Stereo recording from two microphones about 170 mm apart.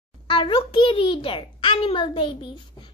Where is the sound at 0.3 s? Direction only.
30° left (ahead or behind).